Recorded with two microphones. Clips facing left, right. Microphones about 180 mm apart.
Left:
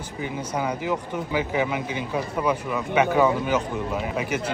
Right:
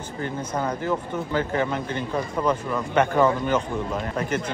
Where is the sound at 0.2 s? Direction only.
10° left (ahead or behind).